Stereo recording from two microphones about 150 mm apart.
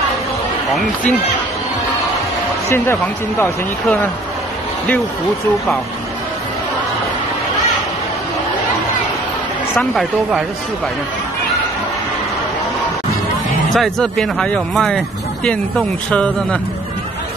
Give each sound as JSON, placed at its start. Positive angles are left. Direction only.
{"t": 2.7, "sound": "speech", "side_deg": 15}
{"t": 9.8, "sound": "speech", "side_deg": 0}
{"t": 13.7, "sound": "speech", "side_deg": 5}